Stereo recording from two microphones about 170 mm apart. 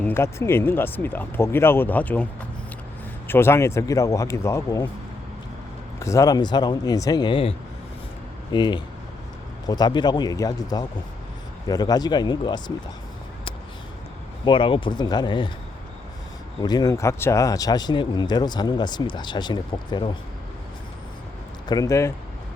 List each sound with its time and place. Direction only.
0.0 s speech: 15° left (ahead or behind)
3.2 s speech: 15° left (ahead or behind)
6.0 s speech: 20° left (ahead or behind)
8.5 s speech: 25° left (ahead or behind)
14.4 s speech: 30° left (ahead or behind)
16.6 s speech: 20° left (ahead or behind)
21.7 s speech: 20° left (ahead or behind)